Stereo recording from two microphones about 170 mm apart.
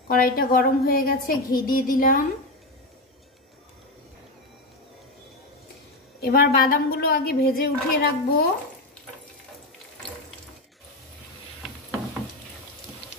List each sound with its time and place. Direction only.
0.1 s a woman's voice: 60° left (ahead or behind)
6.2 s a woman's voice: 65° left (ahead or behind)